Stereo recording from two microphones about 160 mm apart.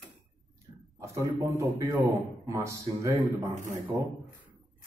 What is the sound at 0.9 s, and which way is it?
A man's voice, 20° right (ahead or behind).